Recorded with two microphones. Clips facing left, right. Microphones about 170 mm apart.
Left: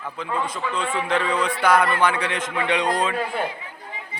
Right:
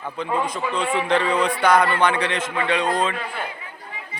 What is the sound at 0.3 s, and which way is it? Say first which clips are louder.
Speech: right 2 dB; 20° right (ahead or behind).